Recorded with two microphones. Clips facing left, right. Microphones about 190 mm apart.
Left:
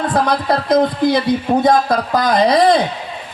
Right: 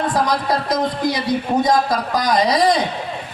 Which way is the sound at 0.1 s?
60° left (ahead or behind).